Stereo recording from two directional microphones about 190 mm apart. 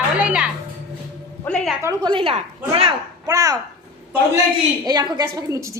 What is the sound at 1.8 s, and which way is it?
A woman's voice, 25° right (ahead or behind).